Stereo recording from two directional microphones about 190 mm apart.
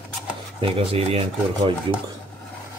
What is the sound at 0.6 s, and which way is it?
Speech, 30° right (ahead or behind).